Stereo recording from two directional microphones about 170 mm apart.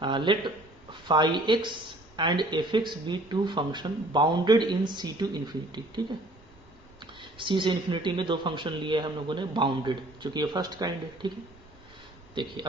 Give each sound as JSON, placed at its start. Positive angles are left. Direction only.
{"t": 0.0, "sound": "speech", "side_deg": -30}
{"t": 7.0, "sound": "speech", "side_deg": -30}
{"t": 12.3, "sound": "speech", "side_deg": -30}